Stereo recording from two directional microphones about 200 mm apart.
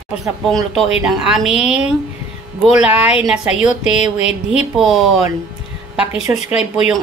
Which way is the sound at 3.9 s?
30° left (ahead or behind).